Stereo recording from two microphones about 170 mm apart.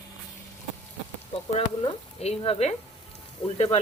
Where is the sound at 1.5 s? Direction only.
40° left (ahead or behind).